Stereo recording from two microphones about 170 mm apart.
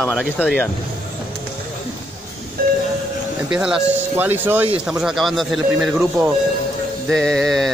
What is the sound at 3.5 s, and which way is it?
Speech, 5° right (ahead or behind).